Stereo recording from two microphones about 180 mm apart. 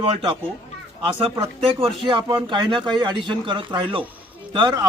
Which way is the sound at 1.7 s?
30° right (ahead or behind).